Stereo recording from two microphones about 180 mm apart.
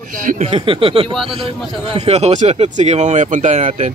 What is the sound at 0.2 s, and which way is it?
Speech, 50° right (ahead or behind).